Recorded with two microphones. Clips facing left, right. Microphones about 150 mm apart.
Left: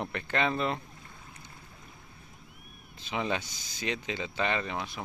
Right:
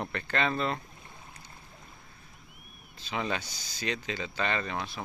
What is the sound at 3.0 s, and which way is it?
Speech, 20° left (ahead or behind).